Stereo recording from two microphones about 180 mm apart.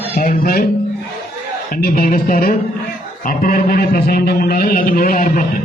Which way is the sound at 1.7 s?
55° left (ahead or behind).